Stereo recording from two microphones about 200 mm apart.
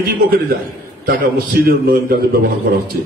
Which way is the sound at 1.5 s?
50° right (ahead or behind).